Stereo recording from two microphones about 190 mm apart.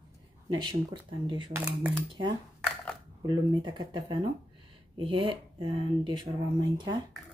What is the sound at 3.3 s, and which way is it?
Speech, 25° right (ahead or behind).